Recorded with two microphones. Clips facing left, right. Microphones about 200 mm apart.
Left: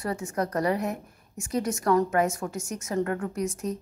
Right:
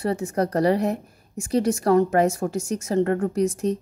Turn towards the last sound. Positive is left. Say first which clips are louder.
# right 7 dB
turn(degrees=-30)  # may be behind; listen again after turning